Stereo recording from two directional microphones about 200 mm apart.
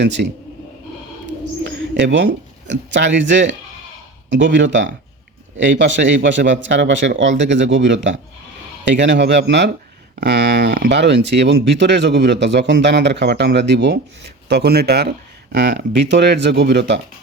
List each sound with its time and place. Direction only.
0.0 s speech: 60° right (ahead or behind)
1.6 s bird: 65° right (ahead or behind)
2.6 s speech: 65° right (ahead or behind)